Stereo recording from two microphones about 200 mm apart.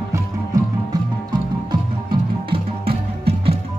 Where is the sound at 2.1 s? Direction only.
25° right (ahead or behind).